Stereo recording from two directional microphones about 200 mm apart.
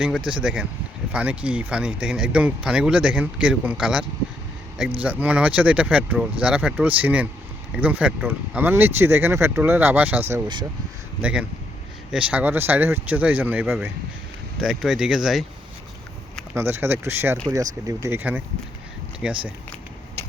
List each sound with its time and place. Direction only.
0.3 s speech: 5° right (ahead or behind)
5.0 s speech: 10° right (ahead or behind)
16.6 s speech: 10° right (ahead or behind)